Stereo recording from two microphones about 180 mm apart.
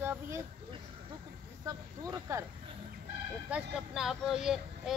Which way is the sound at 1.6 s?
20° right (ahead or behind).